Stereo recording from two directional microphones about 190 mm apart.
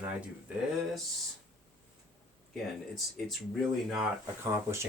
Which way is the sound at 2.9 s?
Centre (ahead or behind).